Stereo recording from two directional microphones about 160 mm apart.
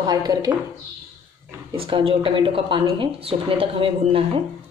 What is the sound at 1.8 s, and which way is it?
A woman's voice, 35° right (ahead or behind).